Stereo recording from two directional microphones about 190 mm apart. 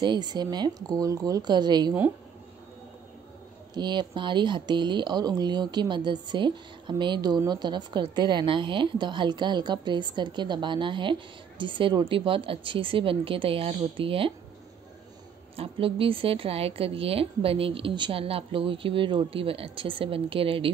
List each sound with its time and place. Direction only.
0.0 s speech: 20° right (ahead or behind)
3.7 s speech: 25° right (ahead or behind)
15.5 s speech: 30° right (ahead or behind)